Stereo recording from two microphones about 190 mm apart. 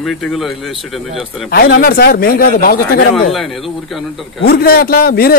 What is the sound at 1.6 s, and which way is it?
A man's voice, 55° left (ahead or behind).